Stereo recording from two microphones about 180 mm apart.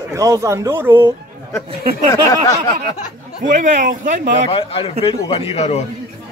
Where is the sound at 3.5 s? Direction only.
45° right (ahead or behind).